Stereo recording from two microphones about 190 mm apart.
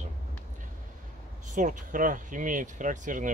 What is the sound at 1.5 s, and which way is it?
Speech, 40° right (ahead or behind).